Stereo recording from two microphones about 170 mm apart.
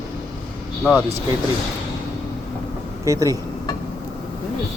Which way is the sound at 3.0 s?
20° right (ahead or behind).